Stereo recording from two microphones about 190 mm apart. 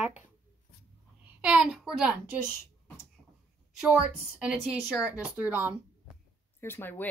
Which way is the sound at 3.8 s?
5° right (ahead or behind).